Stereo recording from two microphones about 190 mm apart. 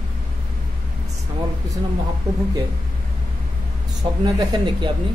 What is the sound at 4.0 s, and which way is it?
Speech, 20° right (ahead or behind).